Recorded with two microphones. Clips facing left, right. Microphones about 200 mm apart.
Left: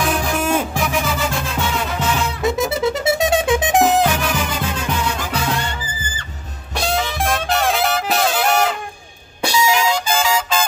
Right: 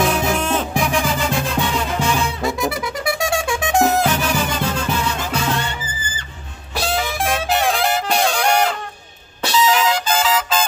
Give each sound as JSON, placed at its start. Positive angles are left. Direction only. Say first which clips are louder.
{"t": 0.1, "sound": "music", "louder": "even", "side_deg": 10}
{"t": 2.0, "sound": "music", "louder": "right 1 dB", "side_deg": -10}
{"t": 2.4, "sound": "music", "louder": "left 4 dB", "side_deg": 25}
{"t": 6.7, "sound": "trumpet", "louder": "left 1 dB", "side_deg": 0}
{"t": 9.4, "sound": "music", "louder": "even", "side_deg": 10}